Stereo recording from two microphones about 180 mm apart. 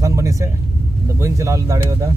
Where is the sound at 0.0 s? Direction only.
15° right (ahead or behind).